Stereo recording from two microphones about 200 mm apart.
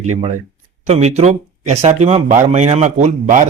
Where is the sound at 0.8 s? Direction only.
35° right (ahead or behind).